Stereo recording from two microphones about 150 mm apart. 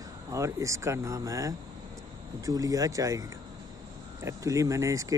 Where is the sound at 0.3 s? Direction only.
20° right (ahead or behind).